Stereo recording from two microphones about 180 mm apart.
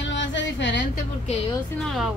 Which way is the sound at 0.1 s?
90° left.